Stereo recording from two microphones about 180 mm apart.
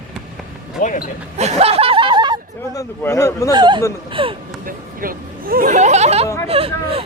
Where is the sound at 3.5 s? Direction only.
25° right (ahead or behind).